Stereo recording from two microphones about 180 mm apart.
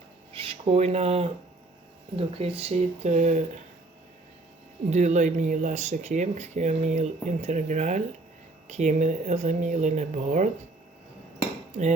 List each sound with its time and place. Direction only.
0.3 s speech: 30° right (ahead or behind)
4.9 s speech: 40° right (ahead or behind)